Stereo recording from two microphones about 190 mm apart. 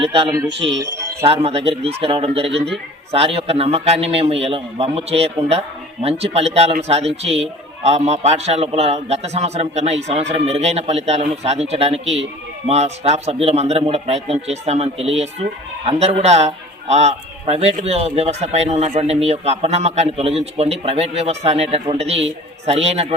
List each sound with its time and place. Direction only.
0.0 s speech: 30° right (ahead or behind)